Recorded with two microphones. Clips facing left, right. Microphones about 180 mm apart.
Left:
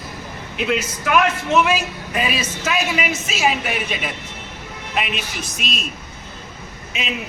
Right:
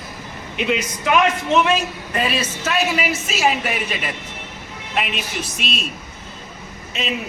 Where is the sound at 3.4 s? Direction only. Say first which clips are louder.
Even; centre (ahead or behind).